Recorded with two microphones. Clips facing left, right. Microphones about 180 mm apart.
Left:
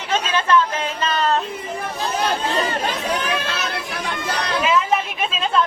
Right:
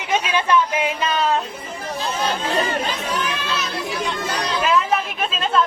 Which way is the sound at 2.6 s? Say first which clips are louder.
Left 1 dB; 55° left (ahead or behind).